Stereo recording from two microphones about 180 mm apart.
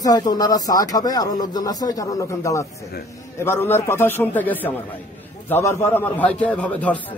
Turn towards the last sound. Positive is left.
turn(degrees=10)  # may be behind; listen again after turning